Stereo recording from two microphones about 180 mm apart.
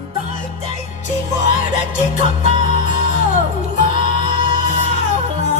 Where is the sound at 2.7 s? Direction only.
45° left (ahead or behind).